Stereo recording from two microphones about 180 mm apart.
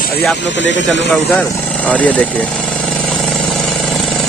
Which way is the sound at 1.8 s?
10° left (ahead or behind).